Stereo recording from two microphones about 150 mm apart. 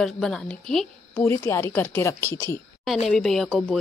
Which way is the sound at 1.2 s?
20° left (ahead or behind).